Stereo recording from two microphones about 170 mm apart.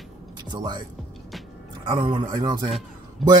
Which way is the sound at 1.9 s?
30° right (ahead or behind).